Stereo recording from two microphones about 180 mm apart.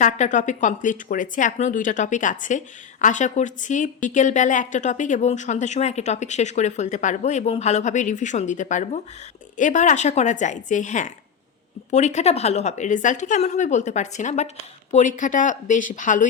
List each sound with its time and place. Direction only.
0.0 s a woman's voice: 45° left (ahead or behind)